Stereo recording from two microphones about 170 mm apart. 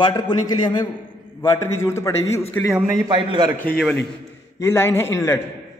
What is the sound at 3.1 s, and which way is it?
Speech, 25° right (ahead or behind).